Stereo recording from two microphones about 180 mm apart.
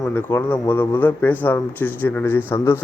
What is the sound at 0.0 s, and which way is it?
Speech, 10° left (ahead or behind).